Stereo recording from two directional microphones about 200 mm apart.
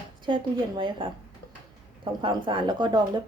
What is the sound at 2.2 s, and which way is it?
Speech, 25° right (ahead or behind).